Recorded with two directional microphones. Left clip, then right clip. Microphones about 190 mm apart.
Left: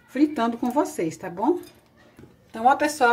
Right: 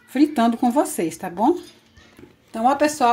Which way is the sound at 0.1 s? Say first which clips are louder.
Right 4 dB; 40° right (ahead or behind).